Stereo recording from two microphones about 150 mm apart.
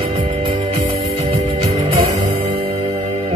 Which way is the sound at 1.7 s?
55° right (ahead or behind).